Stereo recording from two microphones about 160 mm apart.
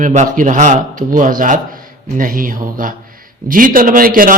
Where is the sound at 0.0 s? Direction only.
50° right (ahead or behind).